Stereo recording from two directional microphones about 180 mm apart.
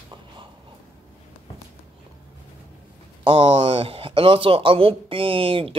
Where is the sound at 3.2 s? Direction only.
30° right (ahead or behind).